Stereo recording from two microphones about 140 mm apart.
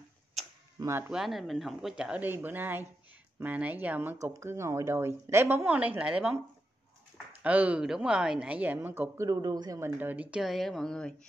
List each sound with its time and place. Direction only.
0.7 s speech: 20° right (ahead or behind)
1.1 s a woman's voice: centre (ahead or behind)
7.4 s a woman's voice: 10° right (ahead or behind); by 11.1 s 5° left (ahead or behind)